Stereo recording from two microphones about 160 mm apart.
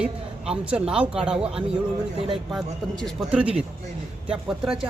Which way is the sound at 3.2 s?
5° right (ahead or behind).